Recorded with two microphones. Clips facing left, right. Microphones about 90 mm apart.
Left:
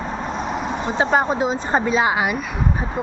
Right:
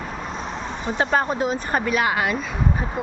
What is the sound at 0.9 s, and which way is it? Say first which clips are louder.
Speech: left 2 dB; 20° left (ahead or behind).